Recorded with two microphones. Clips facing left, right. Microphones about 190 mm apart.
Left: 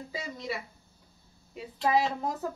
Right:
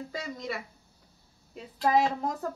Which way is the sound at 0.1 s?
5° left (ahead or behind).